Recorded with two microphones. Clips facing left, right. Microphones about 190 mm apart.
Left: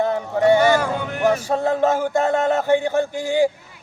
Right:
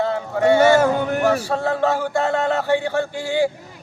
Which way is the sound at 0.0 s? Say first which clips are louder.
Left 1 dB; 15° left (ahead or behind).